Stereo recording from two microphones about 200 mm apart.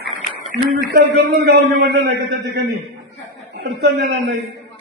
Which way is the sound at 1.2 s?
55° right (ahead or behind).